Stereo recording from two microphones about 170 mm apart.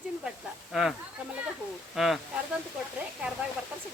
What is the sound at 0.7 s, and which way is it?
Speech, centre (ahead or behind).